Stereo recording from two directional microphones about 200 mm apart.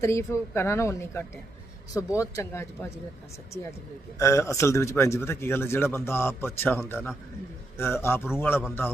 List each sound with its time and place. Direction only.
0.0 s speech: 15° left (ahead or behind)
4.2 s speech: 15° left (ahead or behind)